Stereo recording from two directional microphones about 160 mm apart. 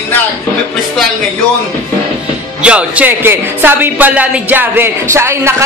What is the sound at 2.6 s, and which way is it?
Speech, 10° right (ahead or behind).